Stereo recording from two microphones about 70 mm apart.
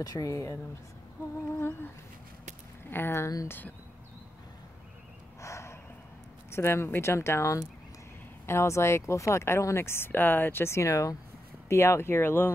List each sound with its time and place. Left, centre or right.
0.0 s speech: left
1.6 s speech: left
2.9 s speech: left
5.4 s a sound: left
6.5 s speech: left